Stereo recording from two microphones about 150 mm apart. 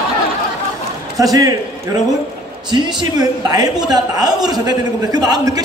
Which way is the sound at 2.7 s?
30° right (ahead or behind).